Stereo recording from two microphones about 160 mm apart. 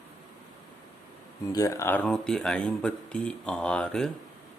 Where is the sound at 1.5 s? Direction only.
20° left (ahead or behind).